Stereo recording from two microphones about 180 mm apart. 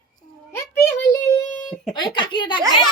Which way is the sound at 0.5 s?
15° left (ahead or behind).